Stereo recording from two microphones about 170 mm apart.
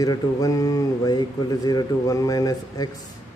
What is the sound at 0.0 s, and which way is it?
A man's voice, 20° left (ahead or behind).